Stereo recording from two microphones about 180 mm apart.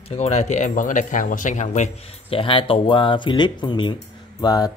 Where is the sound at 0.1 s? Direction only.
40° left (ahead or behind).